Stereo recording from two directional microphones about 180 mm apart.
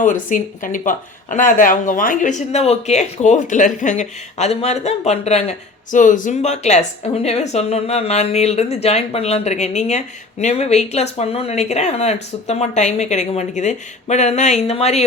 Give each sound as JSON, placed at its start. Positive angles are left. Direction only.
{"t": 0.0, "sound": "speech", "side_deg": 45}